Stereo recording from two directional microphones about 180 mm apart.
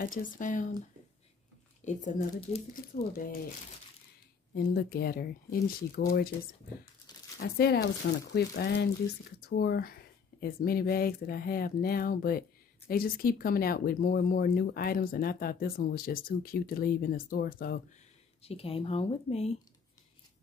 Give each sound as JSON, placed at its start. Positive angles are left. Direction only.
{"t": 0.0, "sound": "speech", "side_deg": 50}
{"t": 1.9, "sound": "speech", "side_deg": 45}
{"t": 2.7, "sound": "speech", "side_deg": 55}
{"t": 4.6, "sound": "speech", "side_deg": 60}
{"t": 7.3, "sound": "speech", "side_deg": 60}
{"t": 18.4, "sound": "speech", "side_deg": 35}